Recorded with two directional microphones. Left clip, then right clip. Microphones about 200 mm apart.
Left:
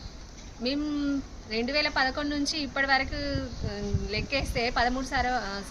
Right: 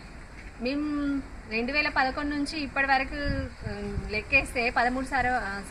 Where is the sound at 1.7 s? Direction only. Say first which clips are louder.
Right 1 dB; 20° left (ahead or behind).